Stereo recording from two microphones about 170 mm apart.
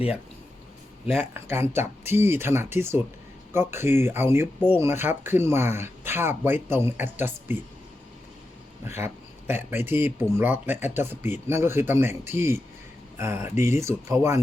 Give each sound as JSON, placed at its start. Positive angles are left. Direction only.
{"t": 1.3, "sound": "speech", "side_deg": -15}
{"t": 8.9, "sound": "speech", "side_deg": -15}